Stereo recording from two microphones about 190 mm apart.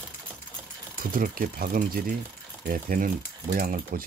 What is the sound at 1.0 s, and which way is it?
Speech, 50° right (ahead or behind).